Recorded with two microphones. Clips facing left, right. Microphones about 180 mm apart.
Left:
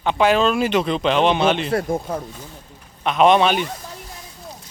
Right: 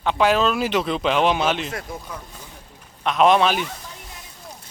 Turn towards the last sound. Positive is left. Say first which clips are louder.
# left 2 dB
turn(degrees=0)  # may be behind; listen again after turning